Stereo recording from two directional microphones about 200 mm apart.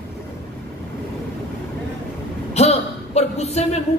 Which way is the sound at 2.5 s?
30° left (ahead or behind).